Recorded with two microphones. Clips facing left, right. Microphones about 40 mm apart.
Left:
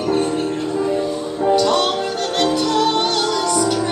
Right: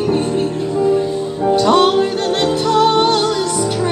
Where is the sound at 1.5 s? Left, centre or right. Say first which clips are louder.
Right 5 dB; centre.